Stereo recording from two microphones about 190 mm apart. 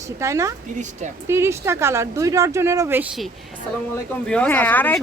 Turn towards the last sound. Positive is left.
turn(degrees=10)  # may be behind; listen again after turning